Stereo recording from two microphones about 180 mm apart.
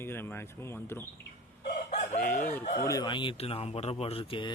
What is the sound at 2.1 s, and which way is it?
Speech, 50° left (ahead or behind).